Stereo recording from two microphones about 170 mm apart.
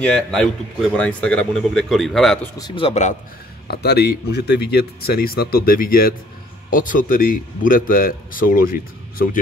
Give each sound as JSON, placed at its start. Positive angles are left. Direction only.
{"t": 0.0, "sound": "a man's voice", "side_deg": 5}
{"t": 2.6, "sound": "a man's voice", "side_deg": 30}
{"t": 3.6, "sound": "a man's voice", "side_deg": 70}